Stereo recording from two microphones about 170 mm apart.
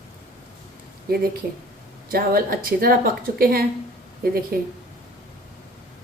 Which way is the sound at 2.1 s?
60° right (ahead or behind).